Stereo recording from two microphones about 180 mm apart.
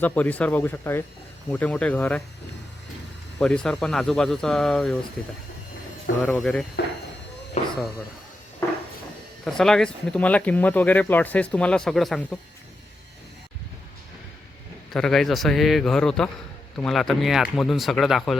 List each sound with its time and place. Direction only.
0.0 s speech: 10° left (ahead or behind)
3.4 s speech: 5° left (ahead or behind)
7.6 s a sound: 40° left (ahead or behind)
9.4 s speech: 5° left (ahead or behind)
14.9 s speech: 5° left (ahead or behind)